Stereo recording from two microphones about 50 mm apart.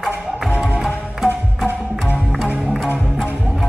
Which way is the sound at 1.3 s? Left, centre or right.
Left.